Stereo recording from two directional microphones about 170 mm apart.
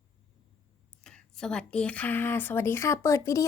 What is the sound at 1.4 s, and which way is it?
Speech, 5° left (ahead or behind).